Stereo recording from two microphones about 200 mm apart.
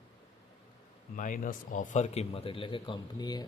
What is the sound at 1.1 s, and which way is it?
Speech, 40° left (ahead or behind).